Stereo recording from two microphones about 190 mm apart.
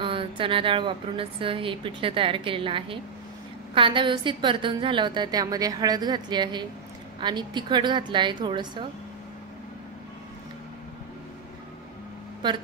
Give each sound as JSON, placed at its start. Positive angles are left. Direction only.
{"t": 0.0, "sound": "a woman's voice", "side_deg": -25}